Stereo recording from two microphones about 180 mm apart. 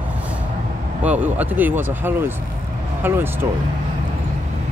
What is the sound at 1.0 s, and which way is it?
Speech, 10° right (ahead or behind).